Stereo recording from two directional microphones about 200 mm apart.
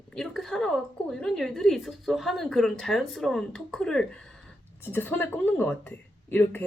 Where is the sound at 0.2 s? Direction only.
Centre (ahead or behind).